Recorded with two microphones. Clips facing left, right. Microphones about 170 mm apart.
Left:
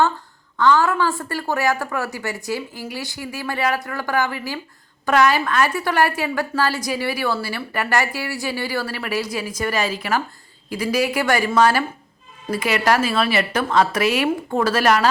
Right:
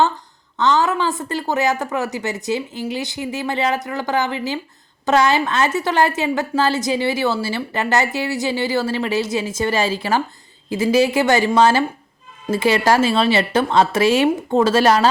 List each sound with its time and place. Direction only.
0.5 s a woman's voice: 20° right (ahead or behind)